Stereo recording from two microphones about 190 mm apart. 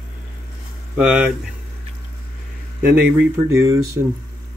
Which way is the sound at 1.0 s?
5° right (ahead or behind).